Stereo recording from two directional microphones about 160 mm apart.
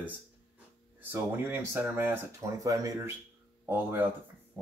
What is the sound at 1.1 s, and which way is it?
Speech, 10° right (ahead or behind).